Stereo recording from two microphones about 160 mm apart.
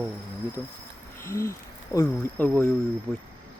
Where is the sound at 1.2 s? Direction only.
15° left (ahead or behind).